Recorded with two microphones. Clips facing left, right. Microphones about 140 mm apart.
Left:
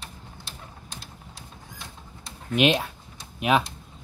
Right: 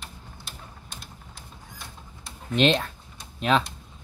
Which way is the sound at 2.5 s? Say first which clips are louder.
Even; 10° left (ahead or behind).